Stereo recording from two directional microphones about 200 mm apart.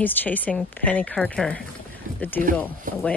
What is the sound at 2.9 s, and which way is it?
Speech, 40° right (ahead or behind).